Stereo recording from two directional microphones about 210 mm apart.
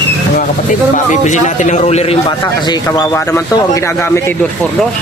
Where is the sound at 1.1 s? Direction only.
35° left (ahead or behind); by 4.2 s 10° left (ahead or behind).